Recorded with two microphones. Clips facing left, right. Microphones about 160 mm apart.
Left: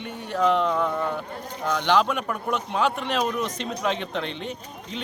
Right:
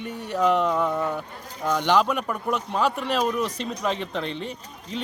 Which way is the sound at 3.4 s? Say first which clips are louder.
Right 1 dB; 35° right (ahead or behind).